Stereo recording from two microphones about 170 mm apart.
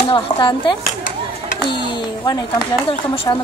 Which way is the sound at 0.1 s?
30° left (ahead or behind).